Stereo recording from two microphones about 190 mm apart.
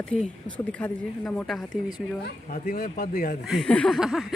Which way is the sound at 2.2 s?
50° left (ahead or behind).